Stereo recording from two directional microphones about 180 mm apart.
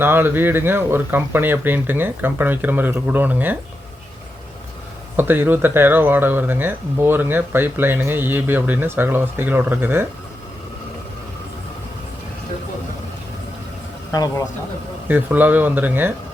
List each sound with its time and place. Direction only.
0.0 s speech: 10° right (ahead or behind)
5.1 s speech: 10° right (ahead or behind)
14.1 s speech: 20° left (ahead or behind)
15.0 s speech: 10° right (ahead or behind)